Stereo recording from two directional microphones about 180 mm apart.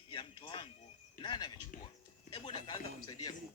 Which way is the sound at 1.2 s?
25° left (ahead or behind).